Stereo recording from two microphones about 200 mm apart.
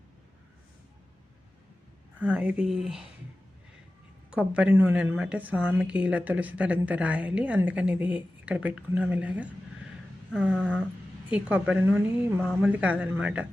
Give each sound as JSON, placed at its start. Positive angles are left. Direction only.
{"t": 2.1, "sound": "speech", "side_deg": -5}
{"t": 4.3, "sound": "a woman's voice", "side_deg": -5}